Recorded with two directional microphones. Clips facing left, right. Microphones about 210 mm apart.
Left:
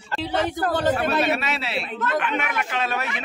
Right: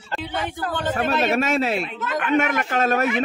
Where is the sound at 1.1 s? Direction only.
45° right (ahead or behind).